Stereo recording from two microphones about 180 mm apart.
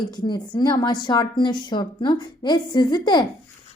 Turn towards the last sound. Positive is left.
turn(degrees=25)  # may be behind; listen again after turning